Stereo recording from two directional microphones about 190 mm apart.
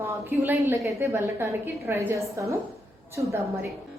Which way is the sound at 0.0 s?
10° right (ahead or behind).